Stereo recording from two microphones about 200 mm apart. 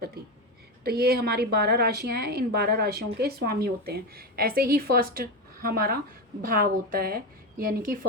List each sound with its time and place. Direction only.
0.9 s a woman's voice: 50° right (ahead or behind)